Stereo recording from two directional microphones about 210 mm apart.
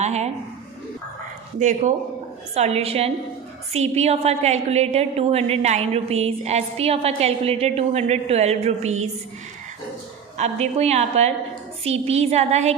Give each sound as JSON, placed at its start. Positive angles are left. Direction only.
{"t": 0.0, "sound": "a sound", "side_deg": -30}
{"t": 1.5, "sound": "a woman's voice", "side_deg": -35}
{"t": 10.3, "sound": "a woman's voice", "side_deg": -30}